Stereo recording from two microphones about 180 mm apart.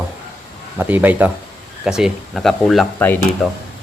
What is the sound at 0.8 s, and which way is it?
Speech, 10° right (ahead or behind).